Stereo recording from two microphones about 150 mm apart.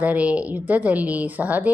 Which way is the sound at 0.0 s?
10° right (ahead or behind).